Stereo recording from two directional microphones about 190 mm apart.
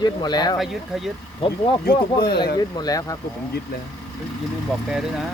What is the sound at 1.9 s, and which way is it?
Speech, 55° left (ahead or behind).